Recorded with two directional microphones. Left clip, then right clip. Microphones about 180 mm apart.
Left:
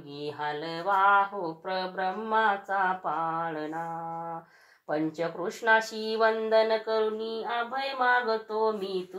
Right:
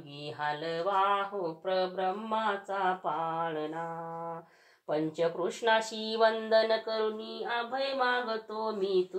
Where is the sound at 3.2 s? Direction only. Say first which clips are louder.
Left 2 dB; 25° right (ahead or behind).